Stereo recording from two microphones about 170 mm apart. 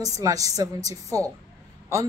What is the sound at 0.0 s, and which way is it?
A woman's voice, 20° right (ahead or behind).